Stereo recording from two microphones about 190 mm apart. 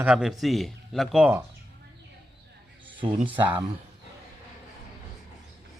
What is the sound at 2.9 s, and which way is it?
Speech, 25° right (ahead or behind).